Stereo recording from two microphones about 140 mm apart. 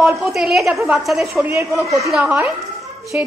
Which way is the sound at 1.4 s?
15° right (ahead or behind).